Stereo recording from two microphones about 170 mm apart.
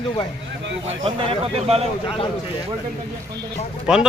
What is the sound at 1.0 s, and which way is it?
Speech, 35° right (ahead or behind).